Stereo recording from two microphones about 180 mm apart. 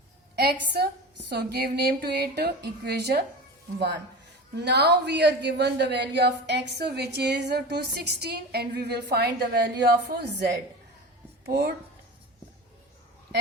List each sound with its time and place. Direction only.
0.3 s speech: 60° right (ahead or behind)
4.5 s a man's voice: 70° right (ahead or behind)
11.4 s speech: 65° right (ahead or behind)